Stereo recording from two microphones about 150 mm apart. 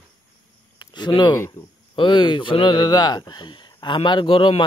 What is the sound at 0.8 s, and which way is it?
Speech, 30° left (ahead or behind).